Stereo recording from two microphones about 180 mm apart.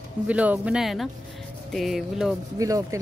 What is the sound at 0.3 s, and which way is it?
Speech, 10° right (ahead or behind).